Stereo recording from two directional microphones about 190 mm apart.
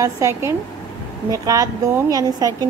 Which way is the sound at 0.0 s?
15° right (ahead or behind).